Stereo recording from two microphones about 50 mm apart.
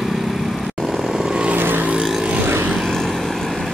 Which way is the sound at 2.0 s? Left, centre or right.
Centre.